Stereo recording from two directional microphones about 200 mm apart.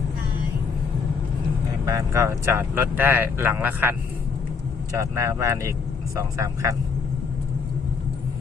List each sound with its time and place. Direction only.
1.8 s speech: 15° right (ahead or behind)